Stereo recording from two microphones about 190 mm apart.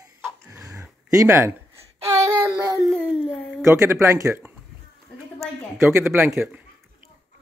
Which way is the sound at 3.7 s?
15° right (ahead or behind).